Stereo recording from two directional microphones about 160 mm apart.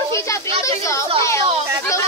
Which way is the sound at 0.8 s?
20° left (ahead or behind).